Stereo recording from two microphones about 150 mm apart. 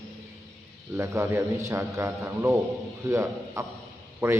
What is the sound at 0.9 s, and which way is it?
A man's voice, 15° right (ahead or behind).